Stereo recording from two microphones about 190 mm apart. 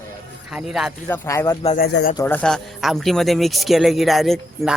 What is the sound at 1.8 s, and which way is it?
Speech, 55° left (ahead or behind).